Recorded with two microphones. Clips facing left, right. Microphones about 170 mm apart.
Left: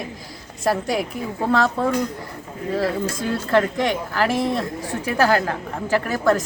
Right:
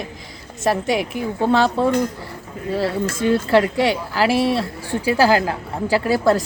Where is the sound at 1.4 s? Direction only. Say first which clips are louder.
Right 3 dB; 30° right (ahead or behind).